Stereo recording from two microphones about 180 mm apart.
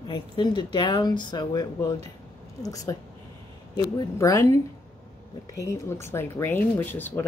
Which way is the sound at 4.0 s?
20° left (ahead or behind).